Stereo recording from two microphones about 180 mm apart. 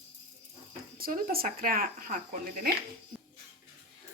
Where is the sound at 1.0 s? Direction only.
50° right (ahead or behind).